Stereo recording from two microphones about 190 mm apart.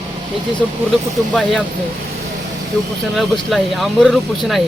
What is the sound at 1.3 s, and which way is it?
Speech, centre (ahead or behind).